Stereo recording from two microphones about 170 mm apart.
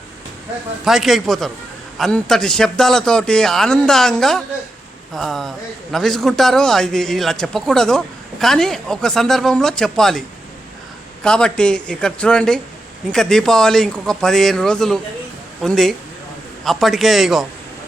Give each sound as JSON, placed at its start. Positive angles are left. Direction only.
{"t": 0.9, "sound": "a man's voice", "side_deg": 0}